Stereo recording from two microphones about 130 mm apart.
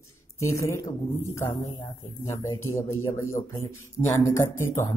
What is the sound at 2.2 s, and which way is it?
Speech, 25° left (ahead or behind).